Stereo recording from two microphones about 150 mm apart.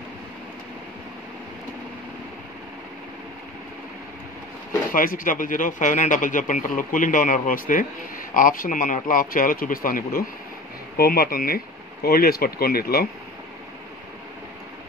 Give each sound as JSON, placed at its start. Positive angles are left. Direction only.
{"t": 4.9, "sound": "speech", "side_deg": 65}
{"t": 11.0, "sound": "speech", "side_deg": 85}